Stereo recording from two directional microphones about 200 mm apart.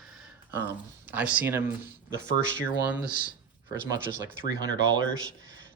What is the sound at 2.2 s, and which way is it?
Speech, 40° left (ahead or behind).